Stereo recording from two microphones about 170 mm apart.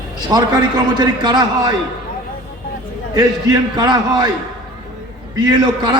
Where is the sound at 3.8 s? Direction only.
25° right (ahead or behind).